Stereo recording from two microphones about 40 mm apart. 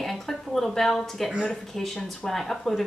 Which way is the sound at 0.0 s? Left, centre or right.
Centre.